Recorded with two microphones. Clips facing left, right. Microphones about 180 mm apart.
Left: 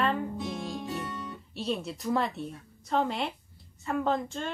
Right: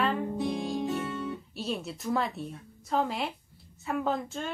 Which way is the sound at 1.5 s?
Centre (ahead or behind).